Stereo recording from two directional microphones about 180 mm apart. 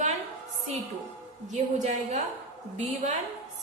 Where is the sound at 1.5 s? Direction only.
40° right (ahead or behind).